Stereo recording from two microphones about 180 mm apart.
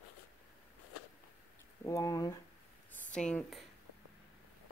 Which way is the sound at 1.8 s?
20° left (ahead or behind).